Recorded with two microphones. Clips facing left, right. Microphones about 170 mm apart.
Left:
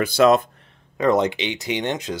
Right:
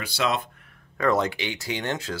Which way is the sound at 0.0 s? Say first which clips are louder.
Left 11 dB; 50° left (ahead or behind).